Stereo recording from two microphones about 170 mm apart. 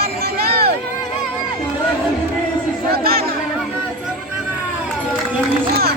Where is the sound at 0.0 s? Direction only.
65° right (ahead or behind).